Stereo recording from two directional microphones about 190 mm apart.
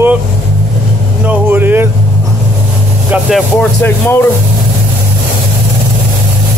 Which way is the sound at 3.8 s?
10° left (ahead or behind).